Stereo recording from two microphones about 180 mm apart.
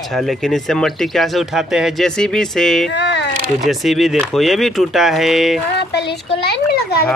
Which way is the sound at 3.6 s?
Centre (ahead or behind).